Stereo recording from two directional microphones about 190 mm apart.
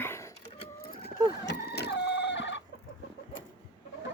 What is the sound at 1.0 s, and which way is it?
Chicken, 60° left (ahead or behind).